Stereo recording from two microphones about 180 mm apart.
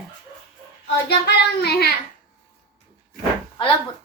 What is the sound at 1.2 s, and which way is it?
Child singing, 65° left (ahead or behind).